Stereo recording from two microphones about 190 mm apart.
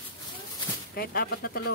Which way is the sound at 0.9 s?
55° left (ahead or behind).